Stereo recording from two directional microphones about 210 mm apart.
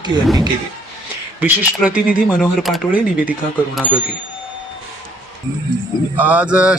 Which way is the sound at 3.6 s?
5° left (ahead or behind).